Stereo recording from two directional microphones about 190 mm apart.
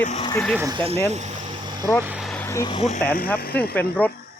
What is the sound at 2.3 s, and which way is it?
Vehicle, 10° left (ahead or behind).